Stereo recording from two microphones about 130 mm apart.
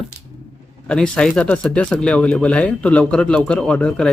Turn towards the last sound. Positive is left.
turn(degrees=10)  # may be behind; listen again after turning